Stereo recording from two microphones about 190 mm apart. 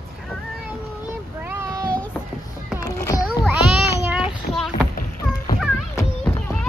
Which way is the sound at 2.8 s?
20° left (ahead or behind).